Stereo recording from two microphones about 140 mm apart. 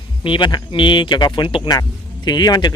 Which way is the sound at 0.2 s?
35° left (ahead or behind).